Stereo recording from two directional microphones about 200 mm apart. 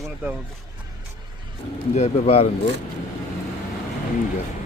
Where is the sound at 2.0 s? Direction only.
35° left (ahead or behind).